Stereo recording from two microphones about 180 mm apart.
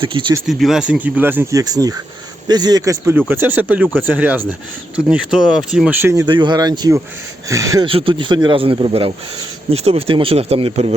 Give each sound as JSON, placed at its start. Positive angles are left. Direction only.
{"t": 0.0, "sound": "speech", "side_deg": -30}
{"t": 0.4, "sound": "speech", "side_deg": 0}
{"t": 6.2, "sound": "speech", "side_deg": -25}
{"t": 7.9, "sound": "speech", "side_deg": -30}